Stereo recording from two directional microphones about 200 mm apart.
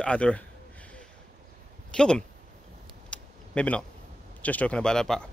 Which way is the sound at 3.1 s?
5° left (ahead or behind).